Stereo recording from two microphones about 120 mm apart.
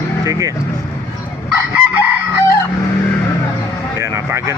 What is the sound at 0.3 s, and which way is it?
Speech, 25° right (ahead or behind).